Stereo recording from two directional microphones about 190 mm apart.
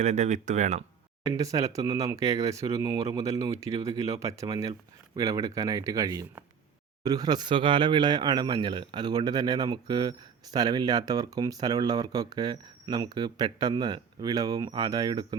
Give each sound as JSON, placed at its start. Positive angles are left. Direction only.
{"t": 0.0, "sound": "speech", "side_deg": -40}
{"t": 1.2, "sound": "speech", "side_deg": -15}